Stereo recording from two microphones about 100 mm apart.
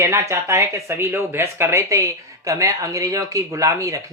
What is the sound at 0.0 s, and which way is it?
Speech, 30° right (ahead or behind).